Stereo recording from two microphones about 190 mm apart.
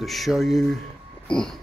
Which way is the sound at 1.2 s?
5° left (ahead or behind).